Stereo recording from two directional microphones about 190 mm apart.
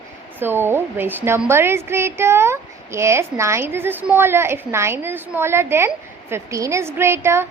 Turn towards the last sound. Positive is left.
turn(degrees=-15)  # may be behind; listen again after turning